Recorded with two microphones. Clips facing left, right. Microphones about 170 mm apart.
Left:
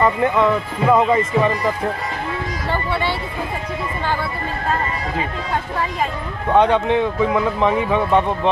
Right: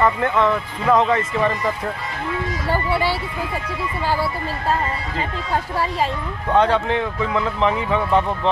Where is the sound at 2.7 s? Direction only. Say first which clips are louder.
Right 1 dB; 10° right (ahead or behind).